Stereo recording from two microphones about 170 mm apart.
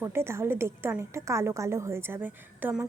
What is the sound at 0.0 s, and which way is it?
A woman's voice, 15° right (ahead or behind).